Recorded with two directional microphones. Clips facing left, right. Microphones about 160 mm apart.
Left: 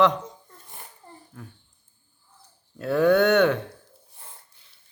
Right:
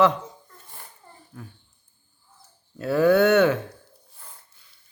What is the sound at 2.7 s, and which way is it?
Speech, 5° right (ahead or behind).